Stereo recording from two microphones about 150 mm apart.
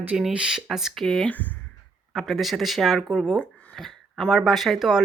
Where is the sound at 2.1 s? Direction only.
Centre (ahead or behind).